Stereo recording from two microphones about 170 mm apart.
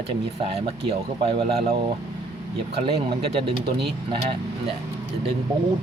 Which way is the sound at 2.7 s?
35° right (ahead or behind).